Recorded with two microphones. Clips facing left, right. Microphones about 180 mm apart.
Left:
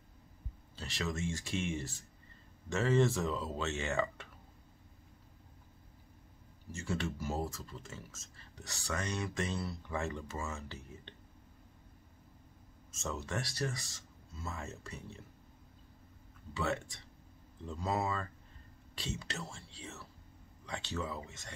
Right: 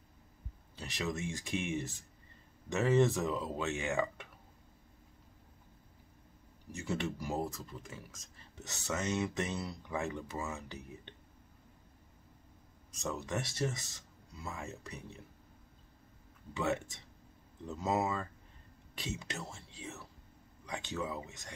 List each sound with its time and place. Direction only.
0.7 s speech: 15° right (ahead or behind)
6.7 s speech: 20° right (ahead or behind)
12.9 s speech: 15° right (ahead or behind)
16.5 s speech: 20° right (ahead or behind)